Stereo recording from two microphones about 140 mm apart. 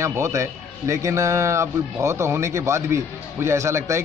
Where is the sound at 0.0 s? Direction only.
20° right (ahead or behind).